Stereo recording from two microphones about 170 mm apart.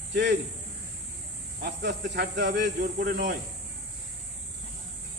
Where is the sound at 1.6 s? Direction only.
85° right.